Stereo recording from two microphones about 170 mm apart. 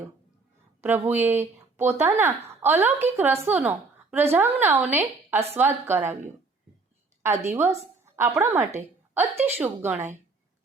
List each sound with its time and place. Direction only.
0.8 s a woman's voice: 10° right (ahead or behind)
7.4 s a woman's voice: 10° right (ahead or behind)
8.0 s a sound: 15° right (ahead or behind)
8.4 s a woman's voice: 10° right (ahead or behind)